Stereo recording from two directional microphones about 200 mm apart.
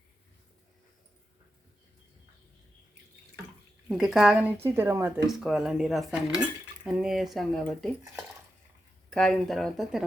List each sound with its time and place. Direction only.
3.8 s a woman's voice: centre (ahead or behind)
5.3 s speech: centre (ahead or behind)
9.0 s speech: 5° left (ahead or behind)